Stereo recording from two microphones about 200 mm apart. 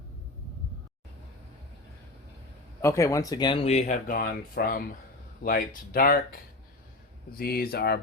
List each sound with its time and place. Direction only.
2.8 s speech: 15° left (ahead or behind); by 8.0 s 55° left (ahead or behind)